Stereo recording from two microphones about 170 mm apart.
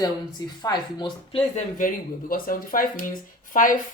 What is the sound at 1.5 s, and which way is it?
Speech, 55° left (ahead or behind).